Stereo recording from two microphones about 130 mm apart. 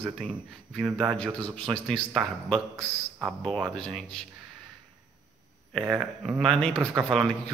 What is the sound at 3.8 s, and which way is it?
Speech, 5° left (ahead or behind).